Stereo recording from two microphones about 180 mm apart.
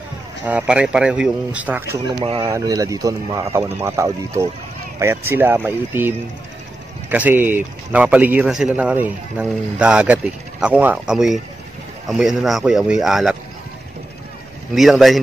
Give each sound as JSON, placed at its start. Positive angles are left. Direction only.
{"t": 0.5, "sound": "a man's voice", "side_deg": -5}
{"t": 2.2, "sound": "speech", "side_deg": -30}
{"t": 2.5, "sound": "a man's voice", "side_deg": -20}
{"t": 14.7, "sound": "speech", "side_deg": 0}